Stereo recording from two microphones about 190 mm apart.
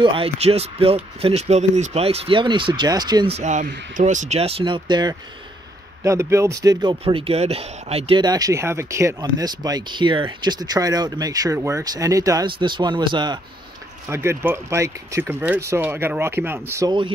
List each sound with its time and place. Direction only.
0.0 s speech: 30° right (ahead or behind)
3.3 s speech: 40° right (ahead or behind); by 17.1 s 20° right (ahead or behind)